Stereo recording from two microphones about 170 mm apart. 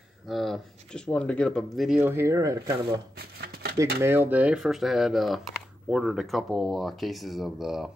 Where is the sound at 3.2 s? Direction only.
70° right (ahead or behind).